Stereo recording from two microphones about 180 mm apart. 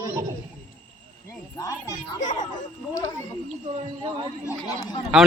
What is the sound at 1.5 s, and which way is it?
Speech, 15° left (ahead or behind).